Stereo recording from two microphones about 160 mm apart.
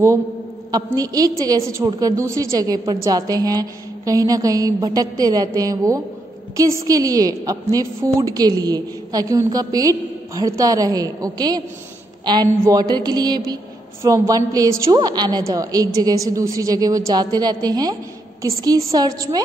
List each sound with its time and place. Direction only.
0.7 s a woman's voice: 20° right (ahead or behind)